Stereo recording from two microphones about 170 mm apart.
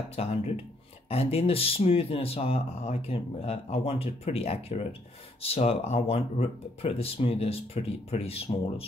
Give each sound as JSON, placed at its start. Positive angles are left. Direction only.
{"t": 0.1, "sound": "speech", "side_deg": 35}